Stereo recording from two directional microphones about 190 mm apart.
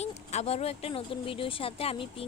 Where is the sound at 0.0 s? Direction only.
35° left (ahead or behind).